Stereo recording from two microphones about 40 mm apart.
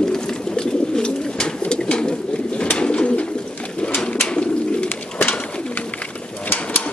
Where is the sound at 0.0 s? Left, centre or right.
Centre.